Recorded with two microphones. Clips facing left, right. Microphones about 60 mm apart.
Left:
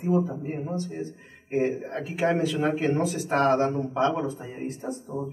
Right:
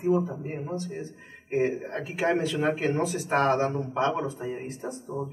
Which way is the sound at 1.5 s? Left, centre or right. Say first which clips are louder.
Left 1 dB; centre.